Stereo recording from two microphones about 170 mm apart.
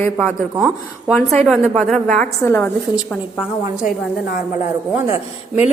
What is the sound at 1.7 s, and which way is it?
A woman's voice, 5° left (ahead or behind).